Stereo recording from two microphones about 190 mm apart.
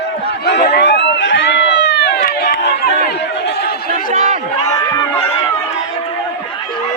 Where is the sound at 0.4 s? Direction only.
60° left (ahead or behind).